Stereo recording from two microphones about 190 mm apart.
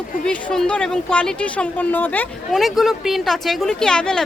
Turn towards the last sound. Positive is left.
turn(degrees=5)  # may be behind; listen again after turning